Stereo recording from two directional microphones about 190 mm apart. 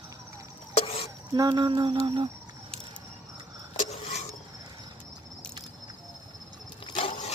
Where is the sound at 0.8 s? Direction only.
30° left (ahead or behind).